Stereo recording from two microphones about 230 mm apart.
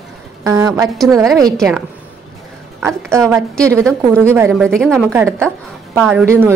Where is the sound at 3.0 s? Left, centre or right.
Centre.